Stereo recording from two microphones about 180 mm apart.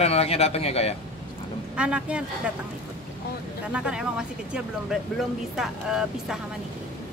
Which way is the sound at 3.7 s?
5° right (ahead or behind).